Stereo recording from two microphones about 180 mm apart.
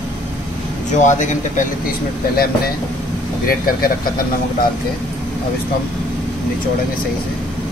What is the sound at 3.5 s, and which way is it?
Speech, 55° left (ahead or behind).